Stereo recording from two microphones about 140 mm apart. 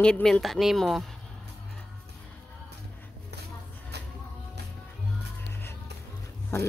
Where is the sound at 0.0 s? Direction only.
5° left (ahead or behind).